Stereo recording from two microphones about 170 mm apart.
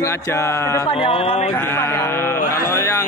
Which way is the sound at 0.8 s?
35° left (ahead or behind).